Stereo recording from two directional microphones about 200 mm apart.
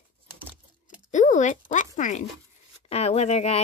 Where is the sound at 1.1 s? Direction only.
40° left (ahead or behind).